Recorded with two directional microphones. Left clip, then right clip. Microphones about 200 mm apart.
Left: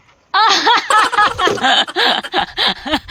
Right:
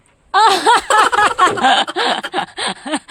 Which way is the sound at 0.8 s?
Centre (ahead or behind).